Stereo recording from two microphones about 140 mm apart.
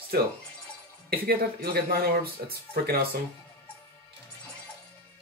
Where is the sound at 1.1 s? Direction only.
90° right.